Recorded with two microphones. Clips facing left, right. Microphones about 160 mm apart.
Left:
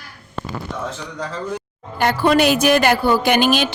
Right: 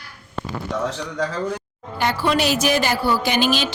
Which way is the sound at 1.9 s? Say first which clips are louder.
Left 5 dB; 55° left (ahead or behind).